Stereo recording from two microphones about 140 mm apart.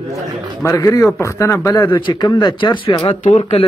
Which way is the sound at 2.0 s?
30° left (ahead or behind).